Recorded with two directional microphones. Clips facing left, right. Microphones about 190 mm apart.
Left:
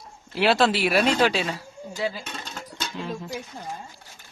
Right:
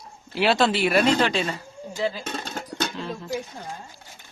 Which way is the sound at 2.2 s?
50° right (ahead or behind).